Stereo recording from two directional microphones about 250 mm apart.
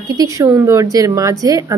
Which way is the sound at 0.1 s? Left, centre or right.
Centre.